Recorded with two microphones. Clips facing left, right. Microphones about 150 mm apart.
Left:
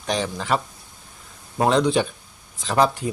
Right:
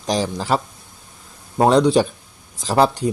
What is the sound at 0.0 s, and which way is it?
Speech, 35° right (ahead or behind).